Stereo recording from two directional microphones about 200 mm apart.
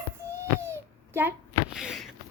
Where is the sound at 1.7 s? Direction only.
5° right (ahead or behind).